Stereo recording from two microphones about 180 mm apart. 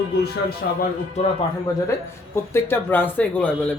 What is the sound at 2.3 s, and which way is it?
Speech, 15° left (ahead or behind).